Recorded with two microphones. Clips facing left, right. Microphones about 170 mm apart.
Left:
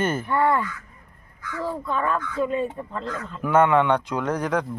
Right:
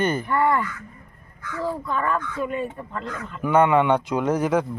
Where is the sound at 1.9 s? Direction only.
15° left (ahead or behind).